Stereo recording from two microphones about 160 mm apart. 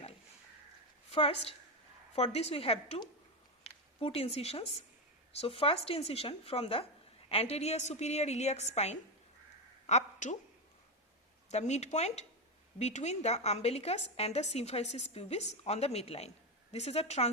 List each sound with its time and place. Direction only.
1.1 s a woman's voice: 35° left (ahead or behind)
9.8 s a sound: 45° left (ahead or behind)
11.5 s a woman's voice: 45° left (ahead or behind)